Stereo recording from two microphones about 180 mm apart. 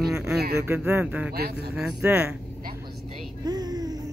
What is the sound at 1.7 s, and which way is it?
Speech, 5° right (ahead or behind).